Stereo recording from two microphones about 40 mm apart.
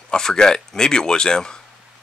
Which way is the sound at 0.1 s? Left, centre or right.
Centre.